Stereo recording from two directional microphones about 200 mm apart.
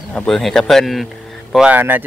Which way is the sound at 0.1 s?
5° left (ahead or behind).